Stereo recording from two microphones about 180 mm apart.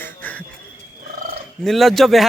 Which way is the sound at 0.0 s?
10° left (ahead or behind).